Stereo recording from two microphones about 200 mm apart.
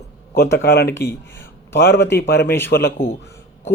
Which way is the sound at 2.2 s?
50° left (ahead or behind).